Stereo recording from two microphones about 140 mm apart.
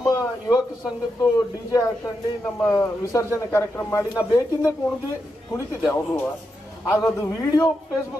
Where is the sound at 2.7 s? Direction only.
20° left (ahead or behind).